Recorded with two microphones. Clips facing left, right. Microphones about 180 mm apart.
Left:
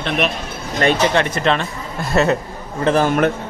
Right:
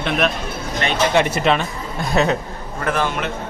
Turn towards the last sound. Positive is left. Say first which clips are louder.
# left 6 dB
turn(degrees=45)  # may be behind; listen again after turning